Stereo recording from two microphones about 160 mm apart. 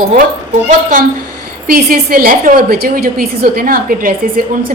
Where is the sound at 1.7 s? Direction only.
65° right (ahead or behind).